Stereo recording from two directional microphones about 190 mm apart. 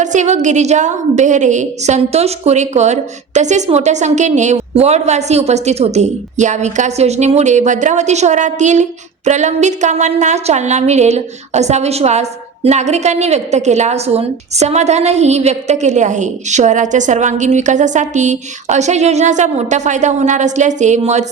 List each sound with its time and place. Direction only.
0.0 s a woman's voice: 40° right (ahead or behind)